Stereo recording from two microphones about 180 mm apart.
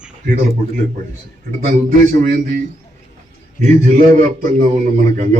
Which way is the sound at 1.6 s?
45° right (ahead or behind).